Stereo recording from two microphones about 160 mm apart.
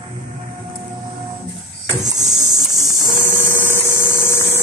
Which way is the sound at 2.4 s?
15° left (ahead or behind).